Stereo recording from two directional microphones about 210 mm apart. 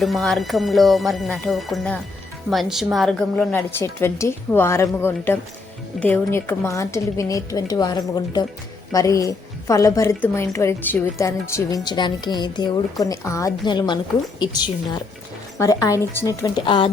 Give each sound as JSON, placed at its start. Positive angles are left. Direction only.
{"t": 0.0, "sound": "a woman's voice", "side_deg": 0}